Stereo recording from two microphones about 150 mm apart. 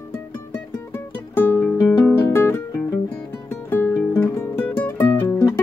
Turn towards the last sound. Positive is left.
turn(degrees=25)  # may be behind; listen again after turning